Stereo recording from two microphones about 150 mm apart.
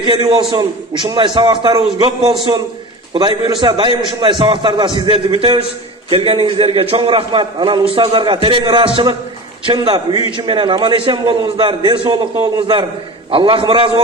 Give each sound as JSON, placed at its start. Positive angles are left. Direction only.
{"t": 0.0, "sound": "a man's voice", "side_deg": -35}